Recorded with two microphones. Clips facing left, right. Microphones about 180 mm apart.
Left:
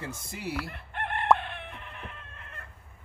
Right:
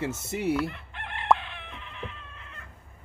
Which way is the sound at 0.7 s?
55° left (ahead or behind).